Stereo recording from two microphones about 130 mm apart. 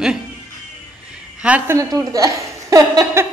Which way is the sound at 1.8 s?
25° right (ahead or behind).